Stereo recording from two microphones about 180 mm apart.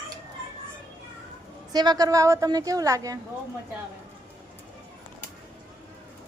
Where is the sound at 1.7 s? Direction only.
20° right (ahead or behind).